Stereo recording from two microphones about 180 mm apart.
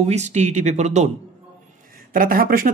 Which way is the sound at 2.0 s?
55° right (ahead or behind).